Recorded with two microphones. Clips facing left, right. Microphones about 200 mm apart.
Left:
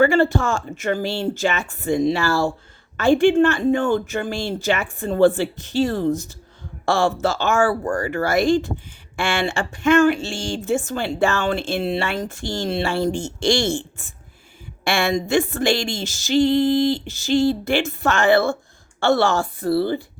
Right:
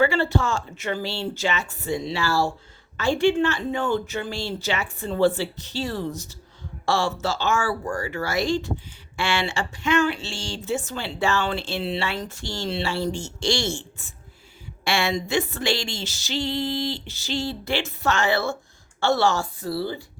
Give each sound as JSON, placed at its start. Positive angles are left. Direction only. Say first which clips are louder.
{"t": 0.0, "sound": "a woman's voice", "louder": "left 5 dB", "side_deg": 50}